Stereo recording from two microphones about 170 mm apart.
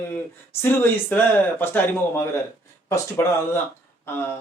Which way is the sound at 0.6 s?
10° left (ahead or behind).